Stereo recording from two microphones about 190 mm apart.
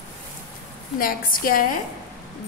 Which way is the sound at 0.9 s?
50° left (ahead or behind).